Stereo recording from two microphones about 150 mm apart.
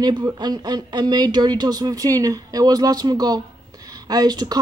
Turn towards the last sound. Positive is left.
turn(degrees=-25)  # may be behind; listen again after turning